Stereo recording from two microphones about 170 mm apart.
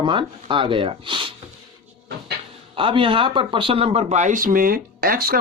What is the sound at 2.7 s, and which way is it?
Speech, 30° right (ahead or behind).